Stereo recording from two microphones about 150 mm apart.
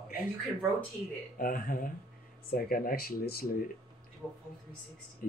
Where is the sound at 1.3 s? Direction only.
70° left (ahead or behind).